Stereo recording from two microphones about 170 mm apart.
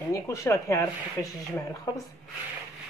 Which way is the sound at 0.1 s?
20° left (ahead or behind).